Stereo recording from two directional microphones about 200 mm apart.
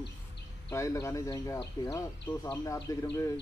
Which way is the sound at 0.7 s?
15° left (ahead or behind).